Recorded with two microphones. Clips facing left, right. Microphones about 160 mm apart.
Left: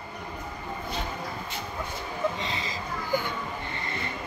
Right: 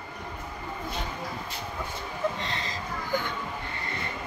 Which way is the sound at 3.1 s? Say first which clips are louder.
Left 2 dB; 10° left (ahead or behind).